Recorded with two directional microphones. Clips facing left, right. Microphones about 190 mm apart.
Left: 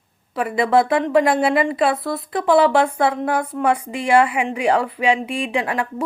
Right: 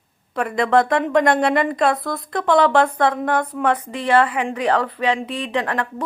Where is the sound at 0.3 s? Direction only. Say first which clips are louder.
Even; 5° left (ahead or behind).